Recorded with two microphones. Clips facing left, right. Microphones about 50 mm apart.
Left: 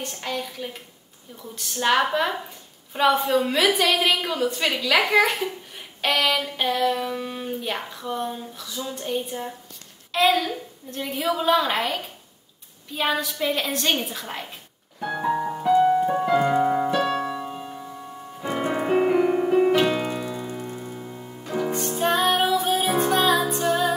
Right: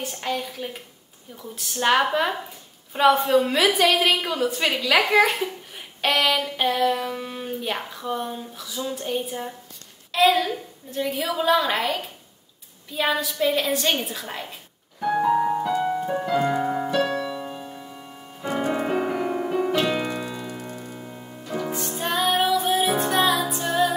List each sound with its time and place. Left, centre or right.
0.0 s a woman's voice: centre
15.0 s music: centre
15.6 s music: centre
17.0 s music: left
18.7 s music: centre
19.9 s piano: centre
20.2 s music: centre
20.5 s music: centre
21.5 s music: centre